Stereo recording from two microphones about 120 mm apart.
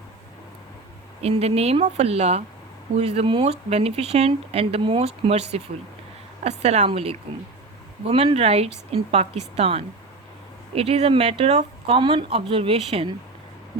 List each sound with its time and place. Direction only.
1.2 s speech: 60° right (ahead or behind)